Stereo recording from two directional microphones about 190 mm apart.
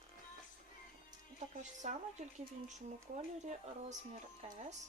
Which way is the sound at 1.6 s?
40° right (ahead or behind).